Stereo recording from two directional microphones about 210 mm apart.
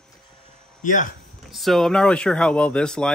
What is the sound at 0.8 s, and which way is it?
Speech, 35° left (ahead or behind).